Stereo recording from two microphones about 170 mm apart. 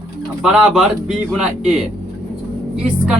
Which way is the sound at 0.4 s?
Centre (ahead or behind).